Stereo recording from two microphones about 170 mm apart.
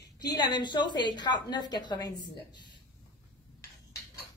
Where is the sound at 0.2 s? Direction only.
25° left (ahead or behind).